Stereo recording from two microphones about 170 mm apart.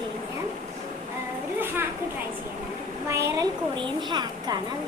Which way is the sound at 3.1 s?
15° right (ahead or behind).